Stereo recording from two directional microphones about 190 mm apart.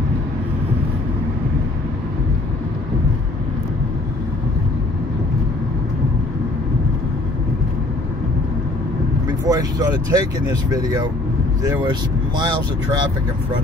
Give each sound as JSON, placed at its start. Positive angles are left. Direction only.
{"t": 9.4, "sound": "speech", "side_deg": -20}